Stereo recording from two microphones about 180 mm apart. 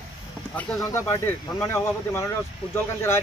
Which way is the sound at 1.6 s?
15° left (ahead or behind).